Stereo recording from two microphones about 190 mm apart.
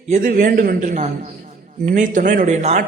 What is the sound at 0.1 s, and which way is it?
Speech, 45° right (ahead or behind).